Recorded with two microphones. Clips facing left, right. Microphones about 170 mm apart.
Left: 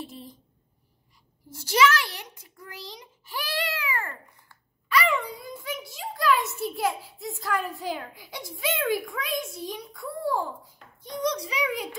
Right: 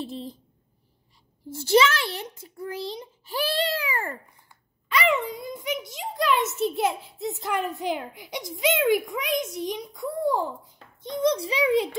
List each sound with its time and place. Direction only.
0.0 s speech: 30° right (ahead or behind)
1.5 s a child's voice: 25° right (ahead or behind)